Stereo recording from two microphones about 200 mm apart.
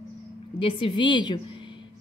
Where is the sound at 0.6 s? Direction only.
25° left (ahead or behind).